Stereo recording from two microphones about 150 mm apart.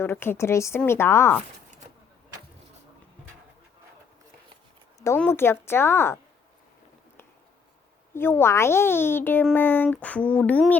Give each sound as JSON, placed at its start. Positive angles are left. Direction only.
{"t": 0.0, "sound": "a child's voice", "side_deg": 15}
{"t": 4.9, "sound": "a sound", "side_deg": 20}
{"t": 5.2, "sound": "a child's voice", "side_deg": 15}
{"t": 8.1, "sound": "a child's voice", "side_deg": 15}